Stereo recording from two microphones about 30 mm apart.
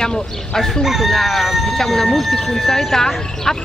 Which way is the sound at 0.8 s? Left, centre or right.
Centre.